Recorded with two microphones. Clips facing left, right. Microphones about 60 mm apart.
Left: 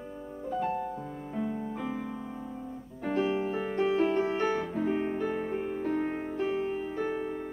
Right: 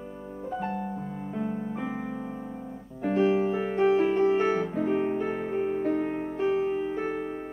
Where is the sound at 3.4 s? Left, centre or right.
Centre.